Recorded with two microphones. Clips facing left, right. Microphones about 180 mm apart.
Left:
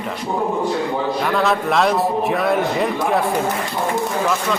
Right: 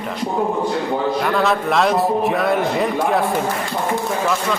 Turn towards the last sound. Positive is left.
turn(degrees=0)  # may be behind; listen again after turning